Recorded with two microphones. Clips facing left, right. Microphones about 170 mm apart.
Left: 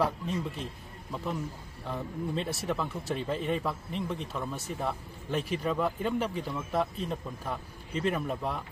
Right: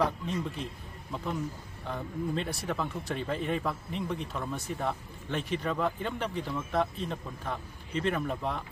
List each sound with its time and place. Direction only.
0.0 s a man's voice: 5° left (ahead or behind)